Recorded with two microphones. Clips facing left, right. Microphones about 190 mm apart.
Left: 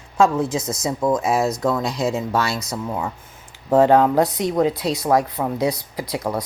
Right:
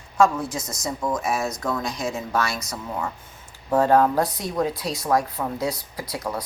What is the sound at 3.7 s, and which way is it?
Speech, 20° left (ahead or behind).